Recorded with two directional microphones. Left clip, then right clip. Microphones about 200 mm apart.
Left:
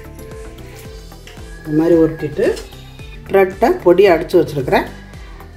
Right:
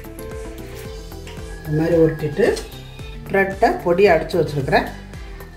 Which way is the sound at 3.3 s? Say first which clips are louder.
Left 4 dB; 35° left (ahead or behind).